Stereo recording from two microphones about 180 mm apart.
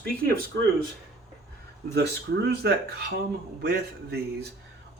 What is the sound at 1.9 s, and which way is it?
Speech, 65° right (ahead or behind).